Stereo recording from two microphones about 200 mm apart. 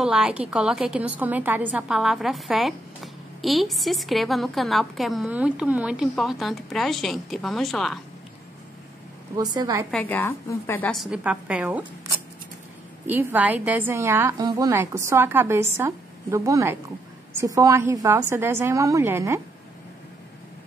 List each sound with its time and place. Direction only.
0.0 s a woman's voice: 5° right (ahead or behind)
9.4 s a woman's voice: 20° right (ahead or behind)
9.8 s a woman's voice: 5° left (ahead or behind)
13.1 s a woman's voice: 10° right (ahead or behind)